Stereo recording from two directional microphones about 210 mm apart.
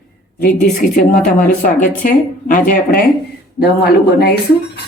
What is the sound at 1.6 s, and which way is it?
A woman's voice, 40° left (ahead or behind).